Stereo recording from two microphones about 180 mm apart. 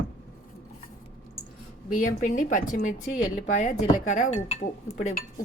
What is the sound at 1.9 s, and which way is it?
Speech, 45° left (ahead or behind).